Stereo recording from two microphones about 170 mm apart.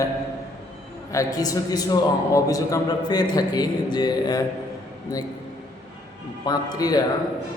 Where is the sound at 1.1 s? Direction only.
20° left (ahead or behind).